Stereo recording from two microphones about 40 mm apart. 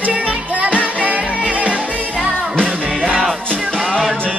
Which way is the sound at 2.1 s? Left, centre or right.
Centre.